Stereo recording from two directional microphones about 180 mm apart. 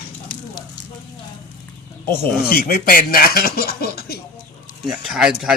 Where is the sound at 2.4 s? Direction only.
55° left (ahead or behind).